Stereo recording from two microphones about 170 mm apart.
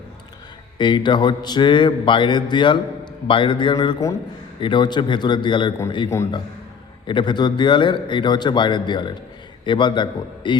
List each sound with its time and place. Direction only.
0.8 s mantra: 25° left (ahead or behind)